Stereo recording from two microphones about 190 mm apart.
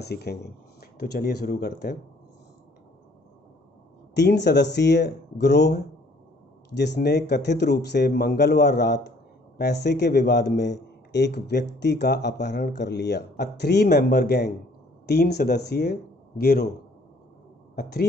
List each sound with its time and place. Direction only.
0.0 s speech: 60° left (ahead or behind)
4.1 s speech: 60° left (ahead or behind)
17.7 s speech: 55° left (ahead or behind)